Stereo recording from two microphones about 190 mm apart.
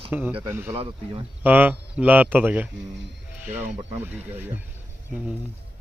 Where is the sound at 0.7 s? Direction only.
30° right (ahead or behind).